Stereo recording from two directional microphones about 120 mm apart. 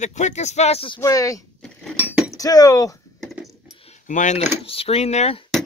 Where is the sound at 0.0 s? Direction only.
75° left (ahead or behind).